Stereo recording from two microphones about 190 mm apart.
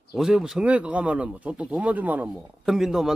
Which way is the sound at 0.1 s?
Centre (ahead or behind).